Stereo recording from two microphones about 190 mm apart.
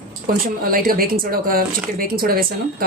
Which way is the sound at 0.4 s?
50° right (ahead or behind).